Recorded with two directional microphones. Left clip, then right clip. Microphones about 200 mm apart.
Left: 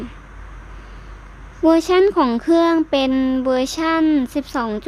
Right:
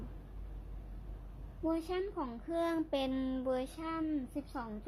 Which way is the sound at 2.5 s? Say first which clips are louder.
Left 17 dB; 25° left (ahead or behind).